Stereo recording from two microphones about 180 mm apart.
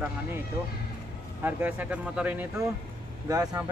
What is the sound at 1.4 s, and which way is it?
Speech, 10° right (ahead or behind).